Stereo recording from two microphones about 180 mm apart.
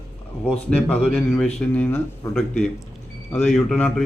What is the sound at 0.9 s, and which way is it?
A man's voice, 10° left (ahead or behind).